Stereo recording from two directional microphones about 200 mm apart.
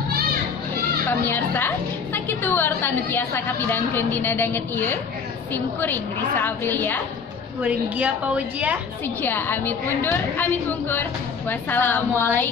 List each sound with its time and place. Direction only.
1.2 s a woman's voice: 10° left (ahead or behind)
7.6 s a woman's voice: 5° right (ahead or behind)
9.2 s a woman's voice: 10° left (ahead or behind)